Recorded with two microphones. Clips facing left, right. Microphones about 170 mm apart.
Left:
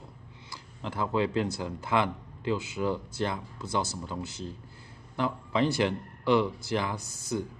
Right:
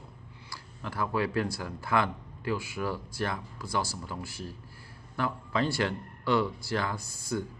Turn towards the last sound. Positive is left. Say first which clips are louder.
# left 1 dB
turn(degrees=20)  # may be behind; listen again after turning